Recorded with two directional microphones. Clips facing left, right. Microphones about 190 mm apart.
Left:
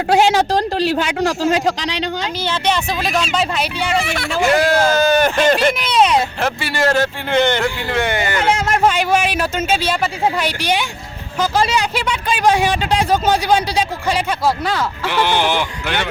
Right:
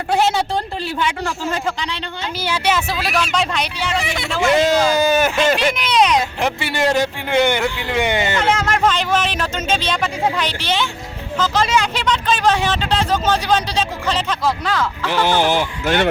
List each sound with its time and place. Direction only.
0.1 s a man's voice: 90° left
2.4 s a man's voice: 10° right (ahead or behind)
4.0 s a man's voice: 20° right (ahead or behind)
5.5 s speech: 5° left (ahead or behind)
6.4 s a man's voice: 20° right (ahead or behind)
8.4 s speech: 10° left (ahead or behind)
15.1 s speech: 40° right (ahead or behind)